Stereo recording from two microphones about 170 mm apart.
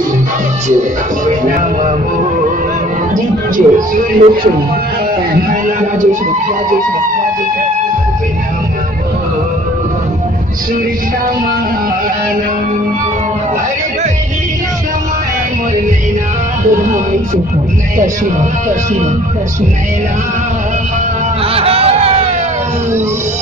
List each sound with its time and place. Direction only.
3.5 s speech: 50° right (ahead or behind)
5.5 s speech: 45° right (ahead or behind)
21.5 s a sound: 35° right (ahead or behind)